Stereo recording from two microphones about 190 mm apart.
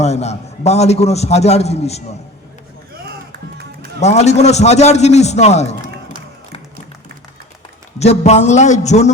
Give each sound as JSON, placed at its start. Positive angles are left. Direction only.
{"t": 0.0, "sound": "a man's voice", "side_deg": 35}
{"t": 4.0, "sound": "a man's voice", "side_deg": 35}
{"t": 7.9, "sound": "a man's voice", "side_deg": 35}